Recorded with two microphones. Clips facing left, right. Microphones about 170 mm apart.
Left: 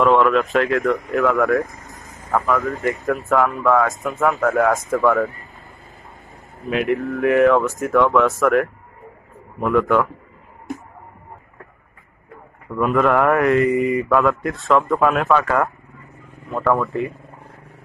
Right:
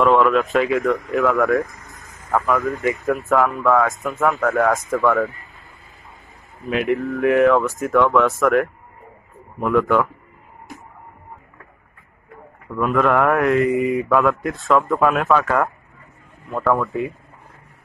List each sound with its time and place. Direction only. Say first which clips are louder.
0.0 s mantra: even; centre (ahead or behind)
1.7 s vehicle: left 3 dB; 20° left (ahead or behind)
2.3 s mantra: even; centre (ahead or behind)
6.6 s mantra: even; centre (ahead or behind)
12.7 s mantra: left 1 dB; centre (ahead or behind)